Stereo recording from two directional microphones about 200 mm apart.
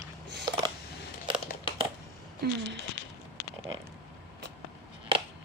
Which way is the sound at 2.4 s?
50° right (ahead or behind).